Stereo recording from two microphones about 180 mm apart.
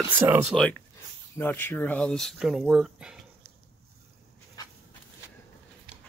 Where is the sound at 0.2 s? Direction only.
10° right (ahead or behind).